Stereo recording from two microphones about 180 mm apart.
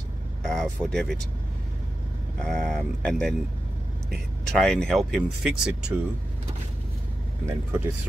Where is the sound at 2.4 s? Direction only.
5° left (ahead or behind).